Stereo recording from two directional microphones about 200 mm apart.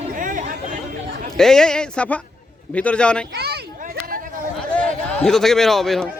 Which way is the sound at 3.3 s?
55° right (ahead or behind).